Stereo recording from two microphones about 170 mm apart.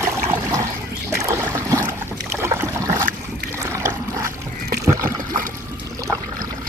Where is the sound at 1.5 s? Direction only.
15° right (ahead or behind).